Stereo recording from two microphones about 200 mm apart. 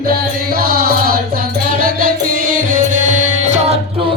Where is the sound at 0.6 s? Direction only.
50° right (ahead or behind); by 3.8 s 35° right (ahead or behind).